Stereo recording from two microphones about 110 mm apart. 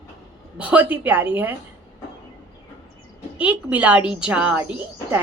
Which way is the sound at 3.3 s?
15° right (ahead or behind).